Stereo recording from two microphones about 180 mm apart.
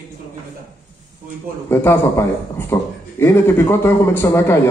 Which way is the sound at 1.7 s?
15° left (ahead or behind).